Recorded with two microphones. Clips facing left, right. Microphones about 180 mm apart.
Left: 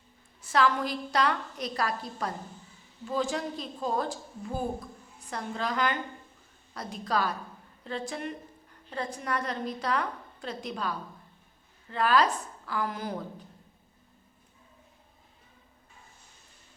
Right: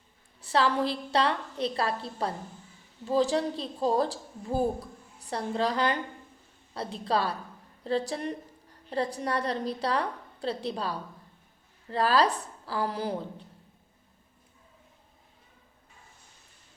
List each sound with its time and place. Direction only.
0.4 s a woman's voice: 30° right (ahead or behind)